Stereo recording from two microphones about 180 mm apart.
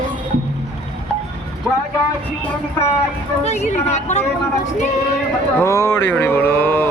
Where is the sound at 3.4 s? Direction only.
40° left (ahead or behind).